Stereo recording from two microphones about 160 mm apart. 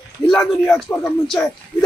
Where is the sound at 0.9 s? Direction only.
10° left (ahead or behind).